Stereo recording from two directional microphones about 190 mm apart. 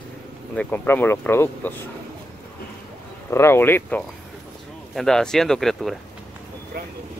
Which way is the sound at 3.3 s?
15° left (ahead or behind).